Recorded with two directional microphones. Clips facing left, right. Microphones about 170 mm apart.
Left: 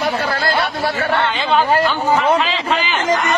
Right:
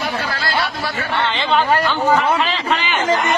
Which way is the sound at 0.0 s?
50° left (ahead or behind).